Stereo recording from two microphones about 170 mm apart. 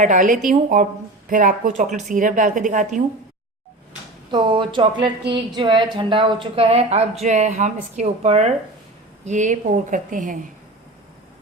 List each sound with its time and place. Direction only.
0.0 s a woman's voice: 50° right (ahead or behind)
4.3 s a woman's voice: 30° right (ahead or behind); by 10.3 s 50° right (ahead or behind)